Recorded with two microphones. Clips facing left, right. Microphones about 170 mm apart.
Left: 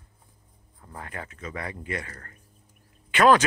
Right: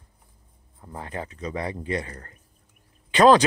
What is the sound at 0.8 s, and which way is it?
Speech, 25° right (ahead or behind).